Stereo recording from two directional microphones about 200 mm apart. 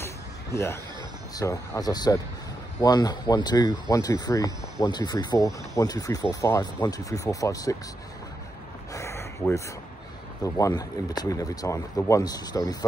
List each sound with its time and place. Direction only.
0.0 s a sound: 15° left (ahead or behind)
1.3 s speech: 15° left (ahead or behind)
8.9 s gasp: 15° left (ahead or behind)
10.4 s speech: 15° left (ahead or behind)